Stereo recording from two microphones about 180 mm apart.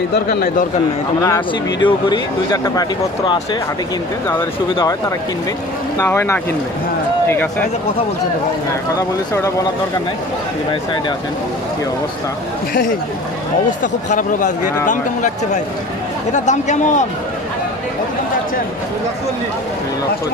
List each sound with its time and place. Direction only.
0.1 s a man's voice: 55° left (ahead or behind)
1.2 s speech: 20° left (ahead or behind)
5.9 s speech: 15° left (ahead or behind)
8.9 s speech: 20° left (ahead or behind)
13.7 s speech: 45° left (ahead or behind)